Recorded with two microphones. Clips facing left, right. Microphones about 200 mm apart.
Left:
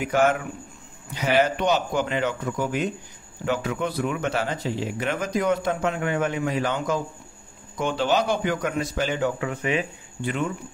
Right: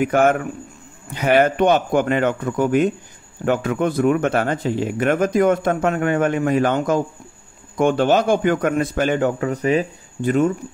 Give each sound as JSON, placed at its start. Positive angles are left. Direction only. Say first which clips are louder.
{"t": 0.0, "sound": "speech", "louder": "right 5 dB", "side_deg": -50}